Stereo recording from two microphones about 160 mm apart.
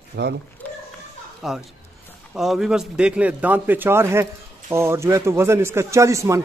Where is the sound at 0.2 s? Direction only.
90° right.